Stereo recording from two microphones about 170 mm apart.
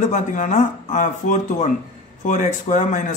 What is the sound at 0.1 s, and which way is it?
Speech, 50° left (ahead or behind).